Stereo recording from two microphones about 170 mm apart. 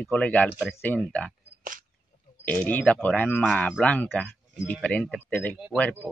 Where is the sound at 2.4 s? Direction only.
10° left (ahead or behind).